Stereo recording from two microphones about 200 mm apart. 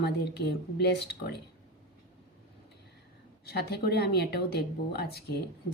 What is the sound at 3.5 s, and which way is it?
Speech, 55° left (ahead or behind).